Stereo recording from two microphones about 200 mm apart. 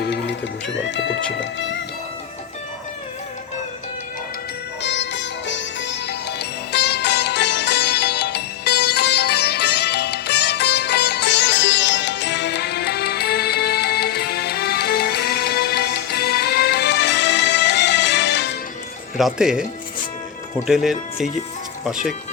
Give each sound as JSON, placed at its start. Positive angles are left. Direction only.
{"t": 0.0, "sound": "music", "side_deg": 55}
{"t": 4.8, "sound": "music", "side_deg": 60}
{"t": 19.1, "sound": "speech", "side_deg": 0}
{"t": 20.7, "sound": "speech", "side_deg": 0}